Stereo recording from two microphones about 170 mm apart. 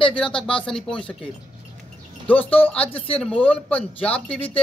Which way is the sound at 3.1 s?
5° left (ahead or behind).